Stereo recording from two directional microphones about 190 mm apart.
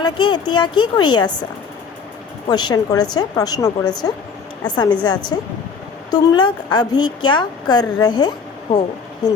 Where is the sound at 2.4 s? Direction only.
20° left (ahead or behind).